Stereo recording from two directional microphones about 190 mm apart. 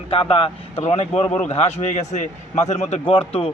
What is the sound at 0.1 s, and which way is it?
A man's voice, 30° left (ahead or behind).